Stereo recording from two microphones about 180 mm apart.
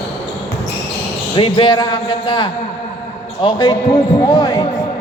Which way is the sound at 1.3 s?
30° left (ahead or behind).